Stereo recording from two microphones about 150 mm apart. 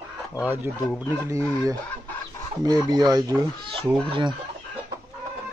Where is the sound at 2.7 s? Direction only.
25° right (ahead or behind).